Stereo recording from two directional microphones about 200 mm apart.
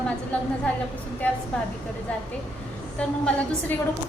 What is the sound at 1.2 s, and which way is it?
Speech, 10° left (ahead or behind).